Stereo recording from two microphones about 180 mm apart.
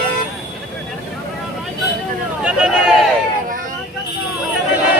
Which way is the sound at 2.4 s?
5° right (ahead or behind).